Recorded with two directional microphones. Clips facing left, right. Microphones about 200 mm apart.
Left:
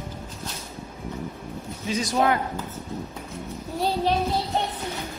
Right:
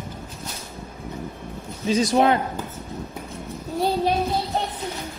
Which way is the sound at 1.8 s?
25° right (ahead or behind).